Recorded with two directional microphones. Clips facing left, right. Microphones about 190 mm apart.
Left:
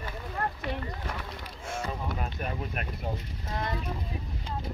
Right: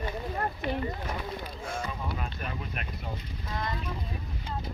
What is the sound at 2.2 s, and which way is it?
Speech, 45° left (ahead or behind).